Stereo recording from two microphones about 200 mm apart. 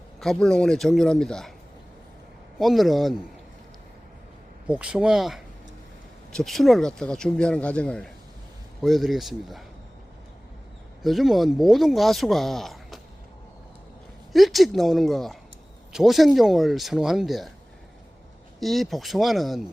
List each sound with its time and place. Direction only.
0.2 s speech: centre (ahead or behind)
2.6 s speech: centre (ahead or behind)
4.6 s speech: 5° right (ahead or behind)
11.0 s speech: centre (ahead or behind)
14.3 s speech: centre (ahead or behind)
18.6 s speech: centre (ahead or behind)